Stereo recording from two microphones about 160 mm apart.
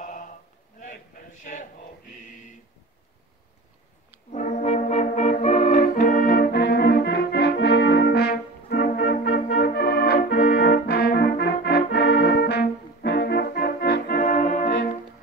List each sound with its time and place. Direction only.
0.9 s a sound: 60° left (ahead or behind)
4.3 s brass instrument: 50° left (ahead or behind)
6.0 s brass instrument: 60° left (ahead or behind)